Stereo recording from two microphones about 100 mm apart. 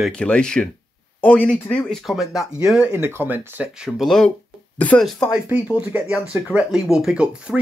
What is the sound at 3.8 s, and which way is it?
Speech, centre (ahead or behind).